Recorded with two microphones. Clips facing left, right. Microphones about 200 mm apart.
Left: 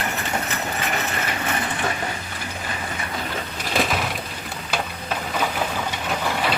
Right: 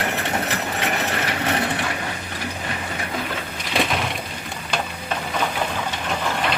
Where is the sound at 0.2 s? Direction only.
70° right (ahead or behind).